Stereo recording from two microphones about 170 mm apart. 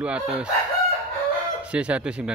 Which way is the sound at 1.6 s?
5° right (ahead or behind).